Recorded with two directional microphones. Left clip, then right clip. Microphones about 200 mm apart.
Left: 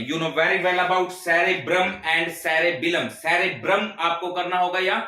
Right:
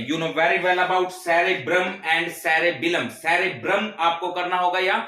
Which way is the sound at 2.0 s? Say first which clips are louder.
Even; 15° right (ahead or behind).